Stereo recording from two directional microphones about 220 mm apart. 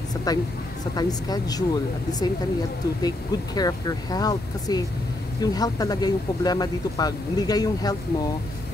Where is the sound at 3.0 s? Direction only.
15° left (ahead or behind).